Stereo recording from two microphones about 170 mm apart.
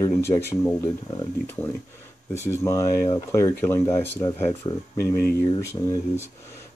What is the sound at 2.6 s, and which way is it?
Speech, 15° left (ahead or behind).